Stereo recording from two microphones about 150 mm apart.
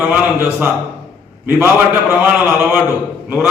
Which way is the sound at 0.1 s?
10° right (ahead or behind).